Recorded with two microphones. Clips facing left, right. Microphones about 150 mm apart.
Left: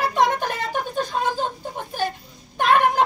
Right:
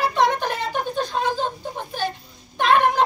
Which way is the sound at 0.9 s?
45° left (ahead or behind).